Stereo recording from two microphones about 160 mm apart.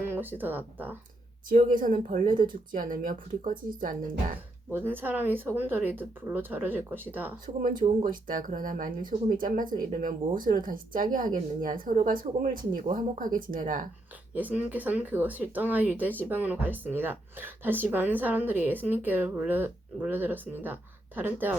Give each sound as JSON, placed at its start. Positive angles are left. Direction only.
{"t": 0.0, "sound": "speech", "side_deg": -10}
{"t": 1.5, "sound": "speech", "side_deg": -60}
{"t": 4.7, "sound": "speech", "side_deg": -10}
{"t": 7.4, "sound": "speech", "side_deg": -60}
{"t": 14.3, "sound": "speech", "side_deg": -10}